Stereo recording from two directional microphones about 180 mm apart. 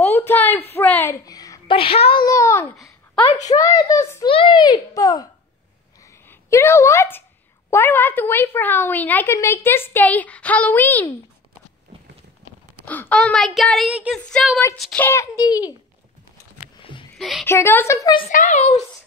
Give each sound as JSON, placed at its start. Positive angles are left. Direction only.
{"t": 0.0, "sound": "a sound", "side_deg": 10}
{"t": 1.8, "sound": "speech", "side_deg": 30}
{"t": 2.2, "sound": "babbling", "side_deg": 15}
{"t": 3.5, "sound": "a sound", "side_deg": 20}
{"t": 4.3, "sound": "a sound", "side_deg": 30}
{"t": 7.7, "sound": "a woman's voice", "side_deg": 10}
{"t": 12.8, "sound": "speech", "side_deg": 10}
{"t": 15.0, "sound": "a child's voice", "side_deg": 20}
{"t": 16.7, "sound": "a sound", "side_deg": 25}
{"t": 17.2, "sound": "a woman's voice", "side_deg": 0}
{"t": 17.5, "sound": "a woman's voice", "side_deg": 15}
{"t": 18.3, "sound": "speech", "side_deg": 45}